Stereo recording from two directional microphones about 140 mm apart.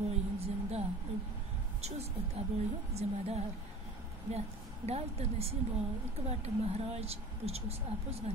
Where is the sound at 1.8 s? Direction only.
50° right (ahead or behind).